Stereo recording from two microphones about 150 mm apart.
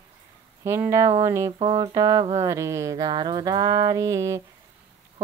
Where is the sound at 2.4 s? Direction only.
20° right (ahead or behind).